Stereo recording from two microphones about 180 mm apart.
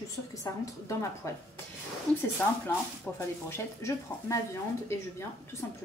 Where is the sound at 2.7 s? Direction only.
15° left (ahead or behind).